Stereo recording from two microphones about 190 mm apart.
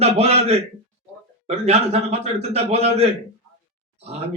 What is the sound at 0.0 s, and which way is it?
A man's voice, 35° right (ahead or behind).